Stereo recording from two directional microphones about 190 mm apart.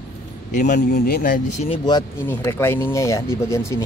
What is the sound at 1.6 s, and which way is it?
Speech, 25° left (ahead or behind).